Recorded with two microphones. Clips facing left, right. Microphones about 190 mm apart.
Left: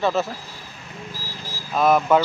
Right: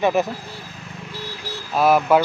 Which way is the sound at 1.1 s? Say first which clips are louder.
Right 6 dB; 70° right (ahead or behind).